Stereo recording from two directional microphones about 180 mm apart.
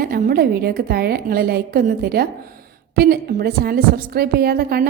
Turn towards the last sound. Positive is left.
turn(degrees=-55)  # may be behind; listen again after turning